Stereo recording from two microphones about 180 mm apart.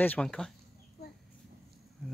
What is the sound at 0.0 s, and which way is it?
Speech, 5° left (ahead or behind).